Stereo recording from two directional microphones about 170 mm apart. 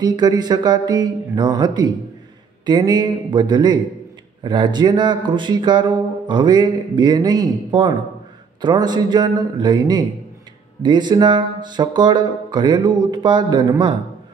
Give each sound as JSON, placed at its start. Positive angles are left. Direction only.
{"t": 0.0, "sound": "speech", "side_deg": -25}